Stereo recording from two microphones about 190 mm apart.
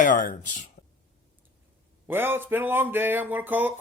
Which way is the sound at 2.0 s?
10° right (ahead or behind).